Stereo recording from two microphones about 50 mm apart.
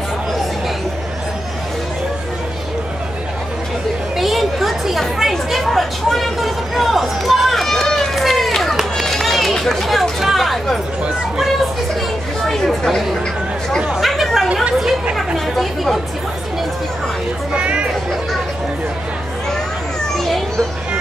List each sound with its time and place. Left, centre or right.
4.2 s a sound: centre
9.0 s run: centre
12.4 s chatter: centre
13.7 s chatter: centre
14.0 s chatter: centre
14.5 s chatter: centre
15.1 s chatter: centre
17.6 s a sound: right
20.2 s children playing: centre